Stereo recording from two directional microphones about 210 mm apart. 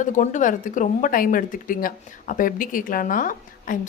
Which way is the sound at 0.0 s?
35° left (ahead or behind).